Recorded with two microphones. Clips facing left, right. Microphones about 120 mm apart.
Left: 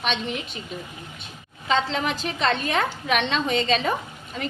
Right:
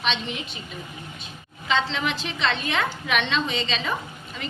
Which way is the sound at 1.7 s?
40° left (ahead or behind).